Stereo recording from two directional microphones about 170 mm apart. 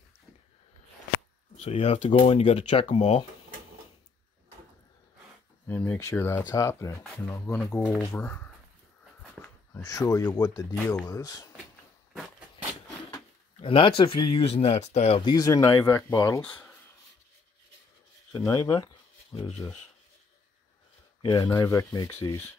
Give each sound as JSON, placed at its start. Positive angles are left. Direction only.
{"t": 1.6, "sound": "speech", "side_deg": 35}
{"t": 5.7, "sound": "speech", "side_deg": 15}
{"t": 9.4, "sound": "a sound", "side_deg": 0}
{"t": 9.8, "sound": "speech", "side_deg": 20}
{"t": 12.1, "sound": "a sound", "side_deg": -5}
{"t": 13.6, "sound": "speech", "side_deg": 30}
{"t": 15.3, "sound": "speech", "side_deg": 20}
{"t": 18.5, "sound": "speech", "side_deg": 25}
{"t": 21.2, "sound": "speech", "side_deg": 25}